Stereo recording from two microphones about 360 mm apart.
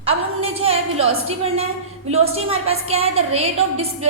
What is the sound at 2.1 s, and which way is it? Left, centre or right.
A woman's voice, centre.